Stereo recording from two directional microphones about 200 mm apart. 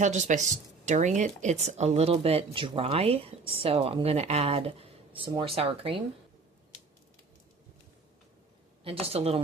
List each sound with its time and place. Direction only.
0.0 s speech: 35° right (ahead or behind)
8.8 s speech: 30° right (ahead or behind)